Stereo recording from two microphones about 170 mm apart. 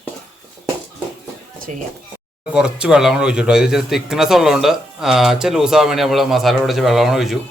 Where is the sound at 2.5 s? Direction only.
5° right (ahead or behind).